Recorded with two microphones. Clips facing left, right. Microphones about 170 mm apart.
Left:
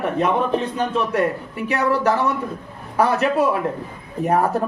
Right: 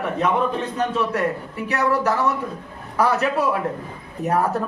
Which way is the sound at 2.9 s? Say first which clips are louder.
Left 2 dB; 30° left (ahead or behind).